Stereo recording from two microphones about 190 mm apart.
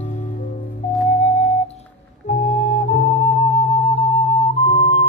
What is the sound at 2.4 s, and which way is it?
Flute, 40° left (ahead or behind).